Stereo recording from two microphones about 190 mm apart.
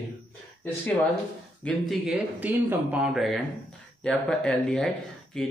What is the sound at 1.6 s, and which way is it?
Speech, 5° left (ahead or behind).